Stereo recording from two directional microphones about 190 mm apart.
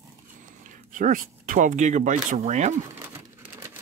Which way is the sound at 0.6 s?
40° right (ahead or behind).